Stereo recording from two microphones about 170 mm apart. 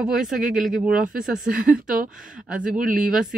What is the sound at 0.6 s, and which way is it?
Speech, 5° right (ahead or behind).